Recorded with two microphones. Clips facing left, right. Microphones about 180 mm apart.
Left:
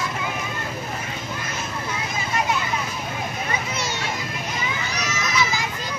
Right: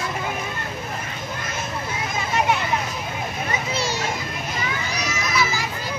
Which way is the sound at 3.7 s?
35° right (ahead or behind).